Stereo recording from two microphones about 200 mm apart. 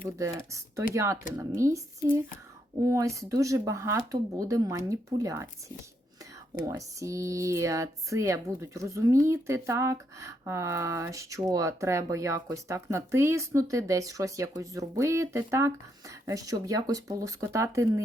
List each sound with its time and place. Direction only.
0.2 s speech: 15° right (ahead or behind)